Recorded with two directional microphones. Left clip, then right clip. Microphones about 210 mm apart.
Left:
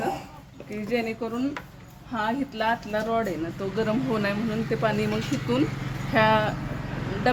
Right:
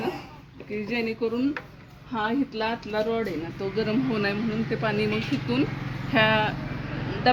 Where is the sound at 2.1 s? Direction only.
35° left (ahead or behind).